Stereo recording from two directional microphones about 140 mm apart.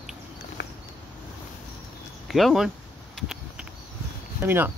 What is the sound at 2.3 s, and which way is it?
Speech, centre (ahead or behind).